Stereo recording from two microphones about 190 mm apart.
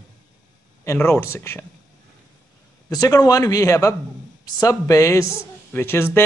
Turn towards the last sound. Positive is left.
turn(degrees=10)  # may be behind; listen again after turning